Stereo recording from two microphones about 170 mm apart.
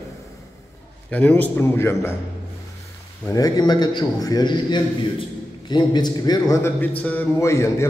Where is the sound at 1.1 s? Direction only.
10° left (ahead or behind).